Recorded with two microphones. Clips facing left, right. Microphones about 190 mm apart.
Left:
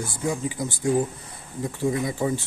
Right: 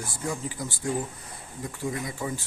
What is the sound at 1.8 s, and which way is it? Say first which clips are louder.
Speech: left 7 dB; 25° left (ahead or behind).